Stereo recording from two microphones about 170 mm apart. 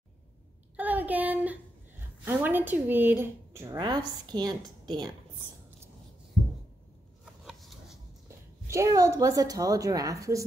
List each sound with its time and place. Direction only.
0.7 s child singing: 10° right (ahead or behind)
2.2 s speech: 10° right (ahead or behind)
7.4 s a sound: centre (ahead or behind)
8.6 s a woman's voice: 20° right (ahead or behind)